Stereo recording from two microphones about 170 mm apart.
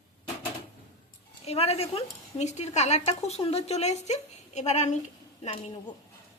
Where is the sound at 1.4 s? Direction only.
35° left (ahead or behind).